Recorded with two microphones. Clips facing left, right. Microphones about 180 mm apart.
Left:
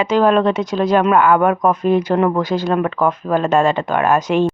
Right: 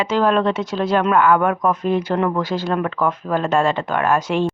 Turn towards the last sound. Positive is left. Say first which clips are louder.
# left 3 dB
turn(degrees=20)  # may be behind; listen again after turning